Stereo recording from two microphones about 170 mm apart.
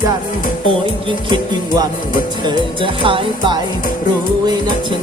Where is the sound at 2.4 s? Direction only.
30° right (ahead or behind).